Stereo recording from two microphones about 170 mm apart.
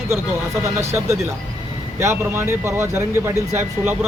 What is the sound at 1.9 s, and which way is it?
Speech, 15° right (ahead or behind).